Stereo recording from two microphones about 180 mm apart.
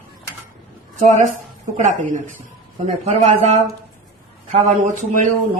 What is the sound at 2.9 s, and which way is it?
Speech, 40° right (ahead or behind).